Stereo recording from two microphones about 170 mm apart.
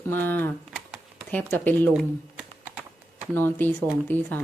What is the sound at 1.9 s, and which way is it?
Typing, 5° right (ahead or behind).